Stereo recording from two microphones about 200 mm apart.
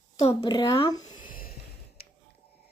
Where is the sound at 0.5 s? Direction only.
15° left (ahead or behind).